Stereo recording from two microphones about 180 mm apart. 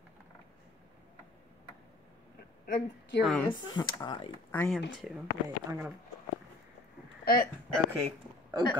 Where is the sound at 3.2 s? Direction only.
5° left (ahead or behind).